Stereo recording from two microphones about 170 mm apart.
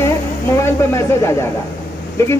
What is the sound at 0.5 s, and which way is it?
Speech, 15° left (ahead or behind).